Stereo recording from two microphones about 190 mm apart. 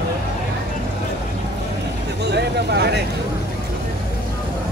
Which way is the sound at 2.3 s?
60° right (ahead or behind).